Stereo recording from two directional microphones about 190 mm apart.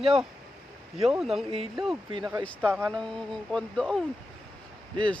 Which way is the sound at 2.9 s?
5° left (ahead or behind).